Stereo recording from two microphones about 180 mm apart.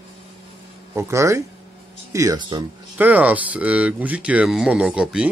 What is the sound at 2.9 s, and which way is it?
Speech, 10° right (ahead or behind).